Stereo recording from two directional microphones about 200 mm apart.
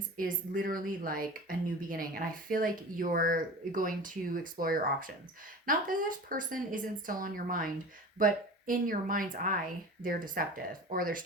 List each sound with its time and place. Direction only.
0.2 s a woman's voice: 45° right (ahead or behind)